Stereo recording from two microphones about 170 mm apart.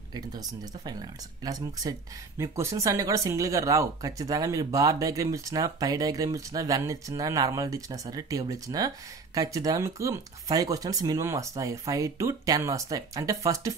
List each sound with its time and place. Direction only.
0.1 s speech: 25° right (ahead or behind)